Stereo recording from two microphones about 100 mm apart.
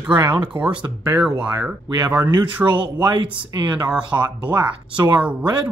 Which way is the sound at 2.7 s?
50° right (ahead or behind).